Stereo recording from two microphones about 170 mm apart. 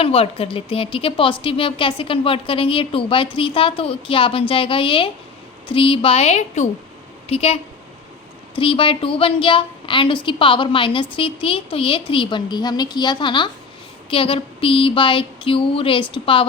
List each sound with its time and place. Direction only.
0.0 s speech: 35° left (ahead or behind)